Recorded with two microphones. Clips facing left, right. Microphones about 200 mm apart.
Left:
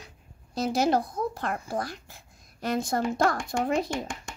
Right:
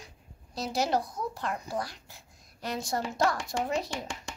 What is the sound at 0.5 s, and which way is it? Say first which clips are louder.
Speech: left 5 dB; 50° left (ahead or behind).